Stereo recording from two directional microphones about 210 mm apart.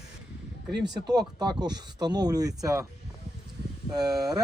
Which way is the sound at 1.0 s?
20° right (ahead or behind).